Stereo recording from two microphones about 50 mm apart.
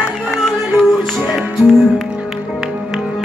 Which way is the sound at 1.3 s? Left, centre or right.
Centre.